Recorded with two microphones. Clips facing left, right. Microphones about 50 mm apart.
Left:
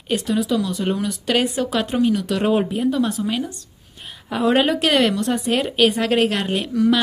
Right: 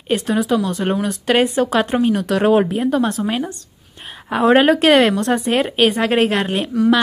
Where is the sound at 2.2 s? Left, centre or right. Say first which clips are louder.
Right 5 dB; right.